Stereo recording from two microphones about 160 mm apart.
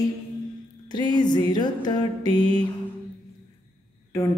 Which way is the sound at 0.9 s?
25° left (ahead or behind).